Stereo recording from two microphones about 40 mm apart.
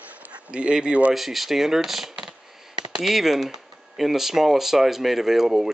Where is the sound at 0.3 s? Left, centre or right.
Right.